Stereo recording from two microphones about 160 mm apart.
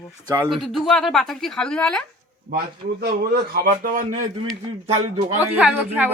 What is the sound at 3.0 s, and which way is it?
A man's voice, 70° right (ahead or behind).